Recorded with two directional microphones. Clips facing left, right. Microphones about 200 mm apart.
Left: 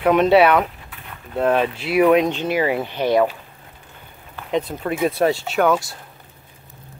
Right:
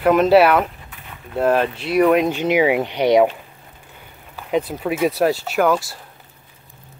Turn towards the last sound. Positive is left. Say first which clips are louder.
# even
turn(degrees=0)  # may be behind; listen again after turning